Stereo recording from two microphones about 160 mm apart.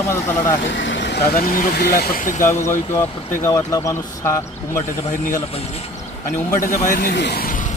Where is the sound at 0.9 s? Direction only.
90° left; by 2.4 s 55° left (ahead or behind).